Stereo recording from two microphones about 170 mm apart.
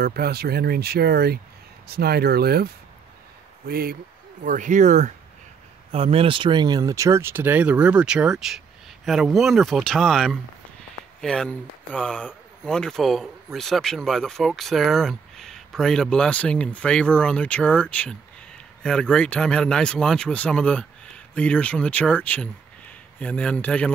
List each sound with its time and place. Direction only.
0.0 s speech: 65° right (ahead or behind); by 5.1 s 45° right (ahead or behind)
5.9 s speech: 35° right (ahead or behind); by 23.9 s 5° left (ahead or behind)